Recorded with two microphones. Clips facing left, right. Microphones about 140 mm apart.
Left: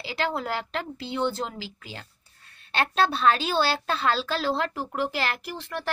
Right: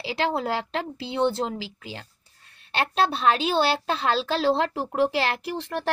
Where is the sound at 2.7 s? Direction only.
10° right (ahead or behind).